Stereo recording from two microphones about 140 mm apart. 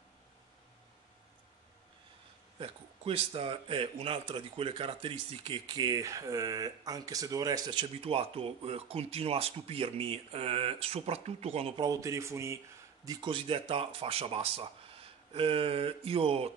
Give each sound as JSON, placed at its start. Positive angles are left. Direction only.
{"t": 2.6, "sound": "a man's voice", "side_deg": -40}
{"t": 7.8, "sound": "speech", "side_deg": -45}
{"t": 11.8, "sound": "a man's voice", "side_deg": -25}